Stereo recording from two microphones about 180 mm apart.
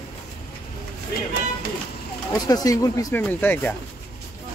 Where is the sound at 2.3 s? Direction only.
20° left (ahead or behind).